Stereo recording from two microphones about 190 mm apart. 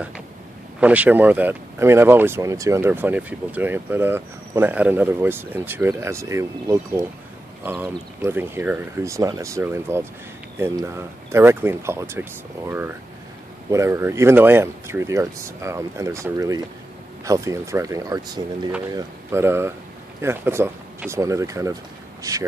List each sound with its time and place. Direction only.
0.7 s speech: 10° right (ahead or behind)